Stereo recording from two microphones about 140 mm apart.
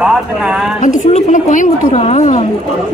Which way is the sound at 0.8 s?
60° left (ahead or behind).